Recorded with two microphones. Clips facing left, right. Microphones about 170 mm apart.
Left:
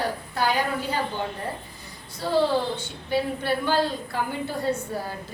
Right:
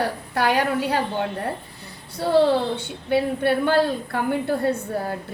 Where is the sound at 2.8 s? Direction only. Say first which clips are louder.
Right 4 dB; 60° right (ahead or behind).